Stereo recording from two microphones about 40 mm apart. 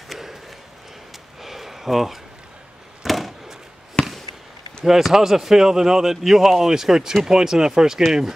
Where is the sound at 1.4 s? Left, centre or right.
Centre.